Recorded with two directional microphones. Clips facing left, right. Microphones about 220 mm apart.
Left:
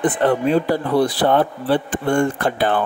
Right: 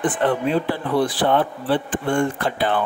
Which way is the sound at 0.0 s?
40° left (ahead or behind).